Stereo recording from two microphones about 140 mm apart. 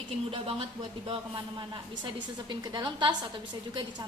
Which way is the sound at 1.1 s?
35° right (ahead or behind).